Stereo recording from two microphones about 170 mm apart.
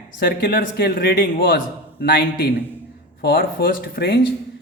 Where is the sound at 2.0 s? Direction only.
90° left.